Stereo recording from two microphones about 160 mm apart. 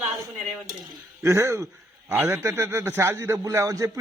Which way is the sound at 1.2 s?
15° right (ahead or behind).